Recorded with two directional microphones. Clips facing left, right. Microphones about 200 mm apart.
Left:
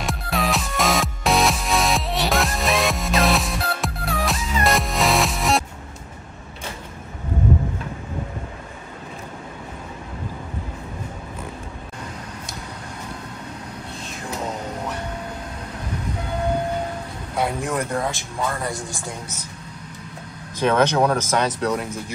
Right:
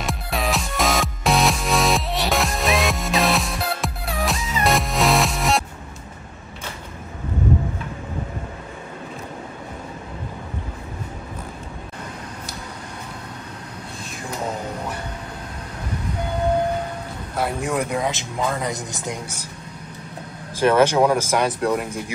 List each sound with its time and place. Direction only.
0.0 s music: centre (ahead or behind)
17.4 s speech: centre (ahead or behind)
20.6 s speech: 10° right (ahead or behind)